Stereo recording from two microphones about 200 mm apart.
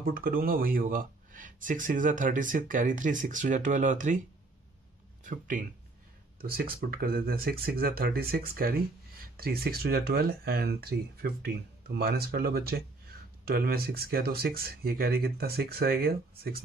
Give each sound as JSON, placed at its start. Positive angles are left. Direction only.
{"t": 0.0, "sound": "speech", "side_deg": -45}
{"t": 5.2, "sound": "speech", "side_deg": -40}